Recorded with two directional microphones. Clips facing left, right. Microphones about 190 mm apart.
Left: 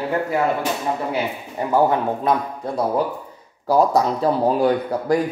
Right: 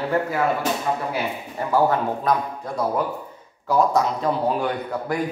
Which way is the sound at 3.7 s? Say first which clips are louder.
Left 3 dB; 35° left (ahead or behind).